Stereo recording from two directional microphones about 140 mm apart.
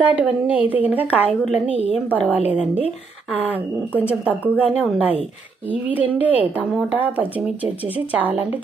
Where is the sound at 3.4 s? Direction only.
10° right (ahead or behind).